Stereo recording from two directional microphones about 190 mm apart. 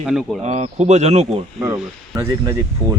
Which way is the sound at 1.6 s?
15° right (ahead or behind).